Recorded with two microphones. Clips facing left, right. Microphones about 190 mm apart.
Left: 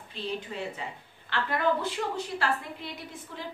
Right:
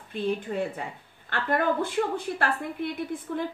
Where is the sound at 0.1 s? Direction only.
50° right (ahead or behind).